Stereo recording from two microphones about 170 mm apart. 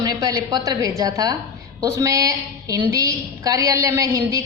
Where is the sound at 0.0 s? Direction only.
25° right (ahead or behind).